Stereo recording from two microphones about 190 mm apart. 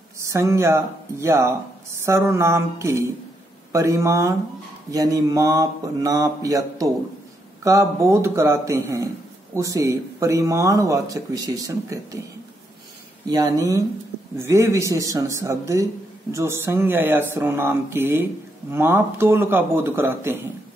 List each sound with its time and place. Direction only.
0.2 s a man's voice: 15° right (ahead or behind)
13.3 s a man's voice: 20° right (ahead or behind)